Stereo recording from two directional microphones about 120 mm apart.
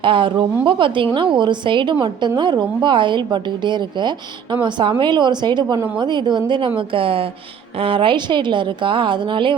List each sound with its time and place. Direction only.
0.0 s a woman's voice: 45° right (ahead or behind)